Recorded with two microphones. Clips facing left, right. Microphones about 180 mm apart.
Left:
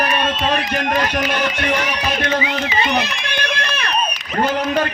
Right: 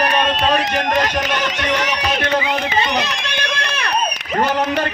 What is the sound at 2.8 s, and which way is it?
Music, 60° left (ahead or behind).